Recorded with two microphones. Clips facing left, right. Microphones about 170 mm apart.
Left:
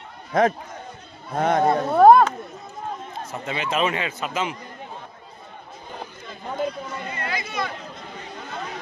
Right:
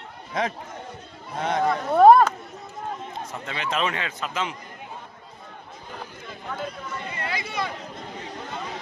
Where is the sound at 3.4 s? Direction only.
5° left (ahead or behind).